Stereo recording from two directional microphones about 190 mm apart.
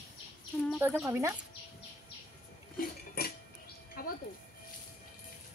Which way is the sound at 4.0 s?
50° left (ahead or behind).